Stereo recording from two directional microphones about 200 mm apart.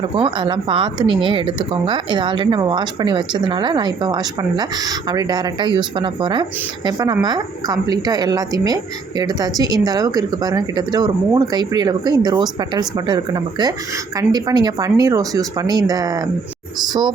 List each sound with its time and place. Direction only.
0.2 s a woman's voice: 25° right (ahead or behind)